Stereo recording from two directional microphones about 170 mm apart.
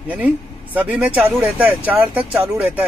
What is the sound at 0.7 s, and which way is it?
Speech, 10° right (ahead or behind).